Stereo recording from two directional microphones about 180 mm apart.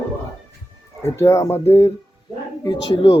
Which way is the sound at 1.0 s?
15° left (ahead or behind).